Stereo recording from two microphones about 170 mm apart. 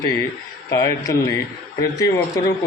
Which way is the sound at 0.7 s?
20° left (ahead or behind).